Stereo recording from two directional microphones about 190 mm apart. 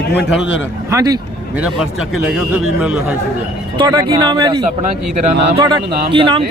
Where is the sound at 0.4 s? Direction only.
80° left.